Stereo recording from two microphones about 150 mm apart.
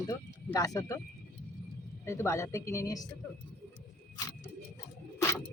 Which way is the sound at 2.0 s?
20° left (ahead or behind).